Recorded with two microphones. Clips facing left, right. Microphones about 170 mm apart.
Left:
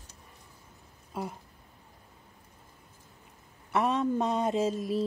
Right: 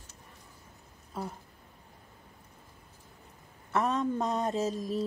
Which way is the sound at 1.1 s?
10° left (ahead or behind).